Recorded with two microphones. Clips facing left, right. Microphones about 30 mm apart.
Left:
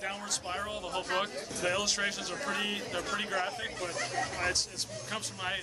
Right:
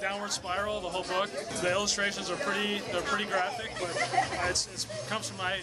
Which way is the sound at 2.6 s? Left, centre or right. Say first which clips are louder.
Right 3 dB; centre.